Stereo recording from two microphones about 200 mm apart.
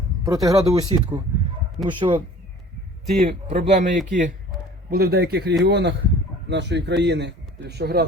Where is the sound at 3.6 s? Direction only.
40° right (ahead or behind).